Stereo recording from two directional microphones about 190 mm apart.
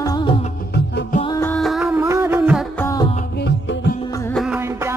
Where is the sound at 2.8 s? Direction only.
15° left (ahead or behind).